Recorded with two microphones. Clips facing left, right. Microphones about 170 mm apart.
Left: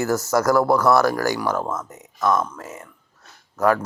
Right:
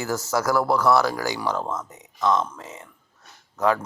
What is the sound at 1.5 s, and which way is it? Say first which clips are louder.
Speech: left 3 dB; 5° left (ahead or behind).